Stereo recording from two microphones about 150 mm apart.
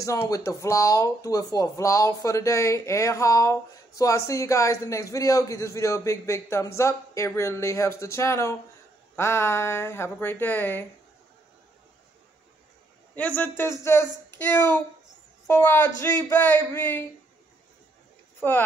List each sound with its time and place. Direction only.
0.0 s speech: 20° left (ahead or behind)
13.1 s speech: 10° left (ahead or behind)
18.4 s speech: 15° left (ahead or behind)